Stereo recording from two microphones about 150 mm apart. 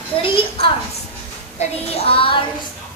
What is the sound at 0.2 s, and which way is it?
Speech, 35° left (ahead or behind).